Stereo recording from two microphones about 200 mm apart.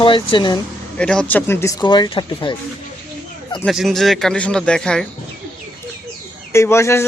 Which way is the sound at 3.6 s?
Centre (ahead or behind).